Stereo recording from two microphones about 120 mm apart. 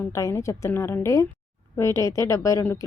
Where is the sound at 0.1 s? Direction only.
25° left (ahead or behind).